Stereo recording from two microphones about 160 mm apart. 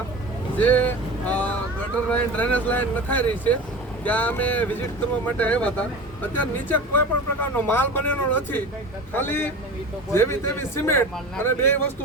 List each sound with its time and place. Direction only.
0.5 s vehicle: 10° left (ahead or behind)
2.0 s speech: 10° left (ahead or behind)